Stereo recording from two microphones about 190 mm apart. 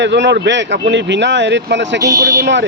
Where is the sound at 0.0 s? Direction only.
70° right (ahead or behind).